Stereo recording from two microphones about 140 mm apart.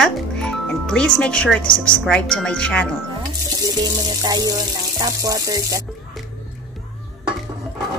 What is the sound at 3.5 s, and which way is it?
Speech, 25° right (ahead or behind).